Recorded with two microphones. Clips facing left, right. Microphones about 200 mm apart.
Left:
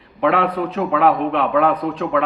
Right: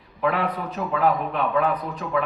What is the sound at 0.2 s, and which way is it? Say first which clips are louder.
A man's voice: left 6 dB; 70° left (ahead or behind).